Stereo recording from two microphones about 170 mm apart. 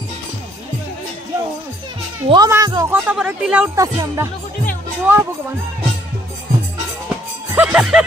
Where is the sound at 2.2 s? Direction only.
25° right (ahead or behind).